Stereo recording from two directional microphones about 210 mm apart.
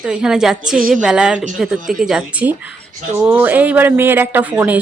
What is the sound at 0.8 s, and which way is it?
Speech, 40° right (ahead or behind).